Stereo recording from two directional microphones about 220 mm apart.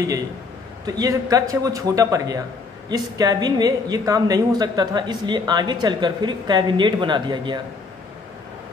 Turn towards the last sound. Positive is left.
turn(degrees=-20)  # may be behind; listen again after turning